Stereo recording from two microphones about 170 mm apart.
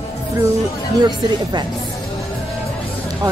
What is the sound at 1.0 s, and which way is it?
Speech, 25° right (ahead or behind).